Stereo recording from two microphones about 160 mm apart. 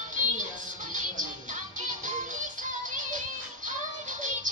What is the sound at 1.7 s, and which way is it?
Music, 50° right (ahead or behind).